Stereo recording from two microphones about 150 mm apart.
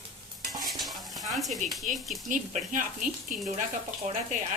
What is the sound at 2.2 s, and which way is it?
Speech, 60° right (ahead or behind).